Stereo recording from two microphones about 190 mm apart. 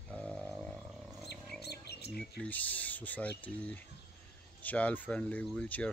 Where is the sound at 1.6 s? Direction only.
60° left (ahead or behind).